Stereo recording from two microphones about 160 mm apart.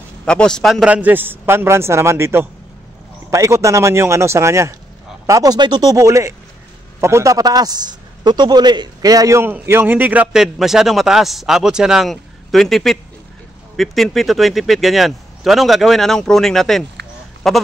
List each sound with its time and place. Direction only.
0.2 s a man's voice: 5° left (ahead or behind)